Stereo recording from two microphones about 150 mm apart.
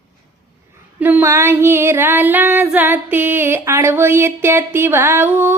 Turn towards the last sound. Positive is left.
turn(degrees=-15)  # may be behind; listen again after turning